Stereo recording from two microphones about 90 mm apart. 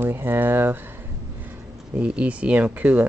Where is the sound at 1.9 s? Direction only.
15° right (ahead or behind).